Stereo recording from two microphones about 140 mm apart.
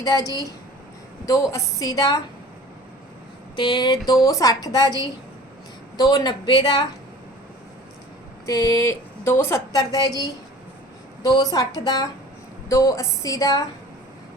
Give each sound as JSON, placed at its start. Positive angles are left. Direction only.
{"t": 0.0, "sound": "a woman's voice", "side_deg": 25}
{"t": 3.5, "sound": "a woman's voice", "side_deg": 35}
{"t": 8.4, "sound": "a woman's voice", "side_deg": 25}